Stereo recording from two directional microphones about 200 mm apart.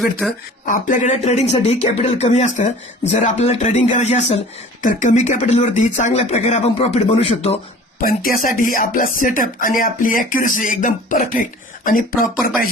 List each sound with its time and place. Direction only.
0.0 s speech: centre (ahead or behind)
0.6 s speech: 40° left (ahead or behind)
8.0 s speech: 45° left (ahead or behind)